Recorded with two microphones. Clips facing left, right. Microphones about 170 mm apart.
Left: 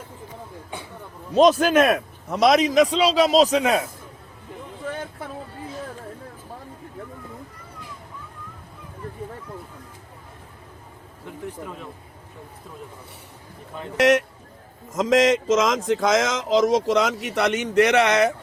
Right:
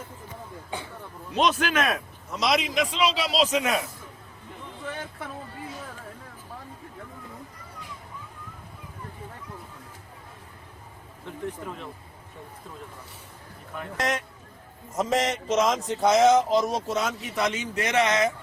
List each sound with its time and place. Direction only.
1.3 s a man's voice: 40° left (ahead or behind)
14.0 s a man's voice: 75° left (ahead or behind)
14.9 s speech: 90° left; by 18.3 s 70° left (ahead or behind)